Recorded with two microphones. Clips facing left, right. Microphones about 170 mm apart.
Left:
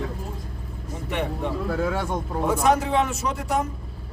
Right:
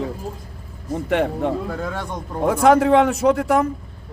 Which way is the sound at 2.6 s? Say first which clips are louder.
Right 9 dB; 90° right.